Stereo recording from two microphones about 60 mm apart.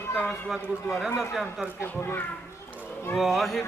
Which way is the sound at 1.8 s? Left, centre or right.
Left.